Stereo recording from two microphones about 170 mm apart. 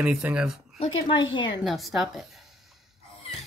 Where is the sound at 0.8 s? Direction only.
25° left (ahead or behind).